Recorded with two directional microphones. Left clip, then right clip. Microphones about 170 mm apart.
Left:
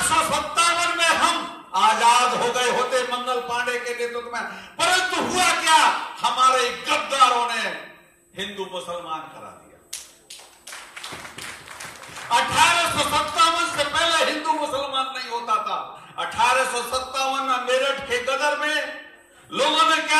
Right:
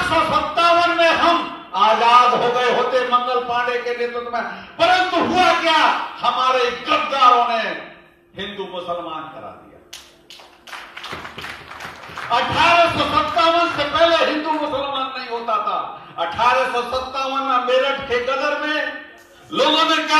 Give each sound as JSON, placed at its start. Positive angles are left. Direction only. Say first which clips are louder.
{"t": 0.1, "sound": "music", "louder": "right 3 dB", "side_deg": 10}
{"t": 12.3, "sound": "speech", "louder": "right 2 dB", "side_deg": 10}